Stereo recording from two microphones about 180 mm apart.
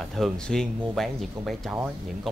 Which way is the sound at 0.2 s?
Centre (ahead or behind).